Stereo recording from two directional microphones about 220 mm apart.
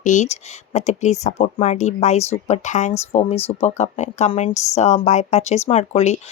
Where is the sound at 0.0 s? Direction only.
35° left (ahead or behind).